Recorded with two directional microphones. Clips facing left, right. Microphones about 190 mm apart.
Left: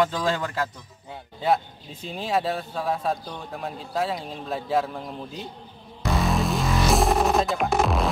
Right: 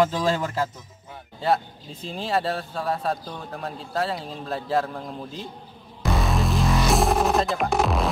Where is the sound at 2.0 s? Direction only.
Centre (ahead or behind).